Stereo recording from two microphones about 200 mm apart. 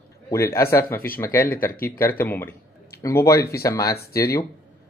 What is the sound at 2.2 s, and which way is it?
Speech, 10° left (ahead or behind).